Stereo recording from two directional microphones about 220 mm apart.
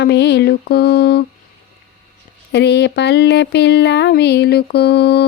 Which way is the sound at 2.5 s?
50° left (ahead or behind).